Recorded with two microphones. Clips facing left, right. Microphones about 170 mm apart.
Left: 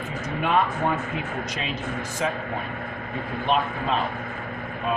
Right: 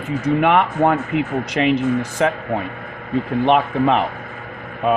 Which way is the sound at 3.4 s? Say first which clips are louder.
Right 8 dB; 65° right (ahead or behind).